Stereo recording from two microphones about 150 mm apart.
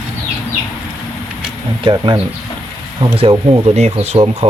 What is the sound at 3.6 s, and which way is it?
Speech, 45° right (ahead or behind).